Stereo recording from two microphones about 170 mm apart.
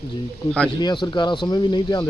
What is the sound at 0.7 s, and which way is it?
Speech, 25° left (ahead or behind).